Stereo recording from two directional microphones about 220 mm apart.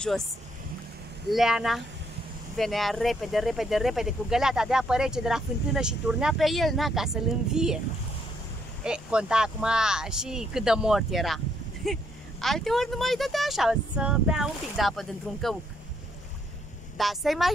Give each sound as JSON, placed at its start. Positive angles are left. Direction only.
{"t": 1.3, "sound": "speech", "side_deg": 0}
{"t": 8.8, "sound": "speech", "side_deg": -5}
{"t": 16.9, "sound": "speech", "side_deg": 0}